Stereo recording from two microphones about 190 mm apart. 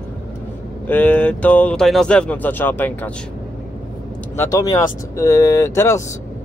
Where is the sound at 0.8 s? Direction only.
10° left (ahead or behind).